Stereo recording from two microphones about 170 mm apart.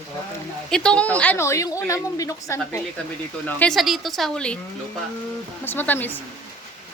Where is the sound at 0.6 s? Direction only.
5° left (ahead or behind).